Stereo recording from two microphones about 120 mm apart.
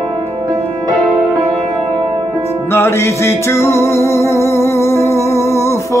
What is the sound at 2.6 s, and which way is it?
Music, 20° left (ahead or behind).